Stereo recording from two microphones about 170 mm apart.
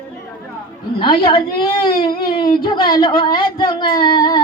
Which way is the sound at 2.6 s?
25° left (ahead or behind).